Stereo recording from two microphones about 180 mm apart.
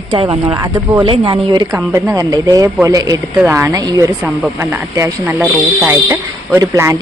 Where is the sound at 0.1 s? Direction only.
30° right (ahead or behind); by 3.7 s 10° right (ahead or behind).